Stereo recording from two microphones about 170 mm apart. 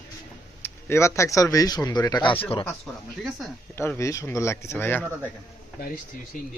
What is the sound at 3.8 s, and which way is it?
Speech, 15° left (ahead or behind).